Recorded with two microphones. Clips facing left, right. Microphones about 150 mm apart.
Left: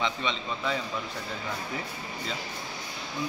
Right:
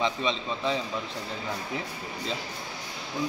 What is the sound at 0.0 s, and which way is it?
Speech, 35° right (ahead or behind).